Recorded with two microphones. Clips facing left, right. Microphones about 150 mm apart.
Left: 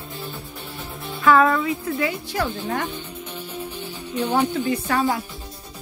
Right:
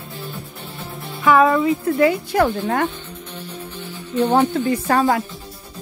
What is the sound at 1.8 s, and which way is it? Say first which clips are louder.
Speech: right 8 dB; 50° right (ahead or behind).